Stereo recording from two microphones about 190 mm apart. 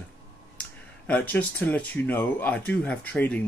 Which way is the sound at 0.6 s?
10° left (ahead or behind).